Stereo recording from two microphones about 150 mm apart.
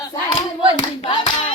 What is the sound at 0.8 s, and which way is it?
Hands, 35° left (ahead or behind).